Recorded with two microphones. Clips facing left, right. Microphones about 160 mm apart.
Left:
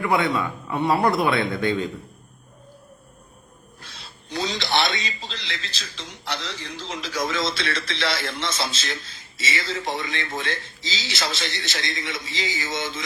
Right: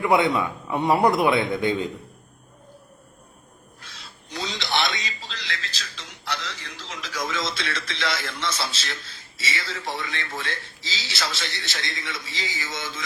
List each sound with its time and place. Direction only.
0.0 s speech: 20° right (ahead or behind)
4.3 s a man's voice: 35° left (ahead or behind)